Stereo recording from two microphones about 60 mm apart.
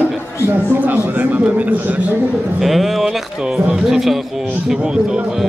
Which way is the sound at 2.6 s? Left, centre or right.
Centre.